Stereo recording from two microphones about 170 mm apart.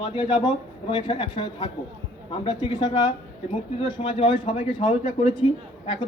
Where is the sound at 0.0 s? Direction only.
30° left (ahead or behind).